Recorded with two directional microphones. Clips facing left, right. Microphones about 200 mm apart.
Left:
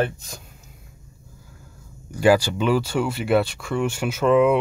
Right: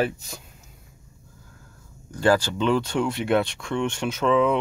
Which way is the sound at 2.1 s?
10° left (ahead or behind).